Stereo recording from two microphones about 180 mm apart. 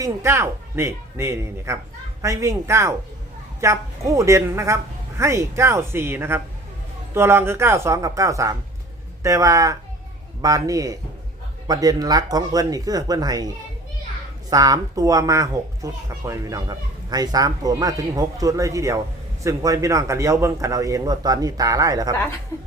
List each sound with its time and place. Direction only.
0.0 s a woman's voice: 15° right (ahead or behind)
14.5 s a woman's voice: 20° right (ahead or behind)
22.5 s speech: 15° left (ahead or behind)